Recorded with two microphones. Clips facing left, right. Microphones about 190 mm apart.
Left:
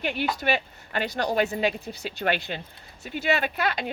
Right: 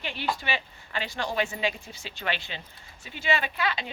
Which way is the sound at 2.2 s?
50° left (ahead or behind).